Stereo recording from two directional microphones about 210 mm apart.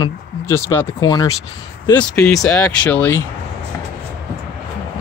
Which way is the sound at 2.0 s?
5° left (ahead or behind).